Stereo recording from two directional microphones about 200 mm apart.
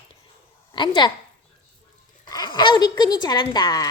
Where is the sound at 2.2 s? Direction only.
20° left (ahead or behind).